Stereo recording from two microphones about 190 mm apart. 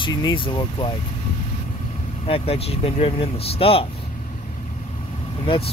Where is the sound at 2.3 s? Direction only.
30° left (ahead or behind).